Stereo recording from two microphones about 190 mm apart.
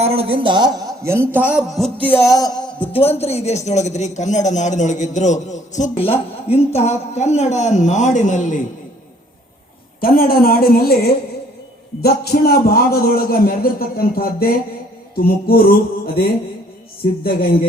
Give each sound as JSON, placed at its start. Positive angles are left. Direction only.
{"t": 0.0, "sound": "a man's voice", "side_deg": -30}
{"t": 10.0, "sound": "a man's voice", "side_deg": 50}